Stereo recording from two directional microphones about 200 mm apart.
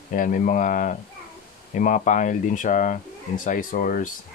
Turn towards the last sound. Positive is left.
turn(degrees=40)  # may be behind; listen again after turning